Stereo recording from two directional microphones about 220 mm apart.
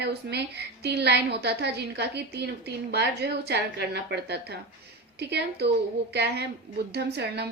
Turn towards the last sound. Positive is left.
turn(degrees=-50)  # may be behind; listen again after turning